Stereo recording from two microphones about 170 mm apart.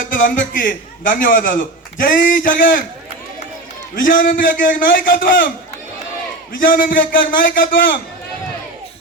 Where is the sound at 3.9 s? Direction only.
55° left (ahead or behind).